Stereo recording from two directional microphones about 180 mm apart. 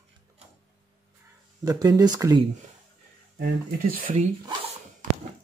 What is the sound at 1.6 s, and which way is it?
Speech, 20° right (ahead or behind).